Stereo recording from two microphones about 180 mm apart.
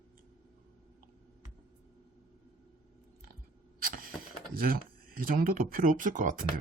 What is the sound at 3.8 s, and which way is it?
Vehicle, 55° right (ahead or behind).